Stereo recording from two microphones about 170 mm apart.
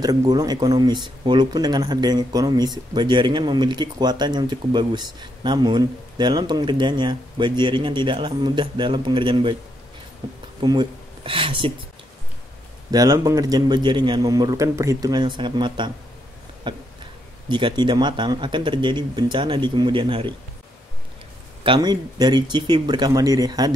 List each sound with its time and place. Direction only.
0.0 s speech: 25° right (ahead or behind)
12.9 s speech: 20° right (ahead or behind)
21.6 s speech: 25° right (ahead or behind)